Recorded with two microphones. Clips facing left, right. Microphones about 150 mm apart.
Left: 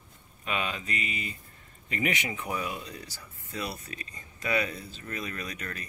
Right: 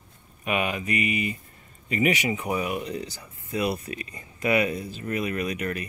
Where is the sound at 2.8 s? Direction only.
25° right (ahead or behind).